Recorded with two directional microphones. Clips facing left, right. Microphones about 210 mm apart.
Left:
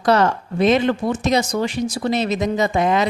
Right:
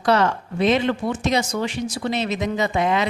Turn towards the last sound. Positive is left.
turn(degrees=40)  # may be behind; listen again after turning